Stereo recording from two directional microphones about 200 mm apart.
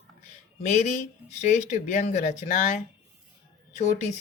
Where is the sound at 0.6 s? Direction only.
35° left (ahead or behind).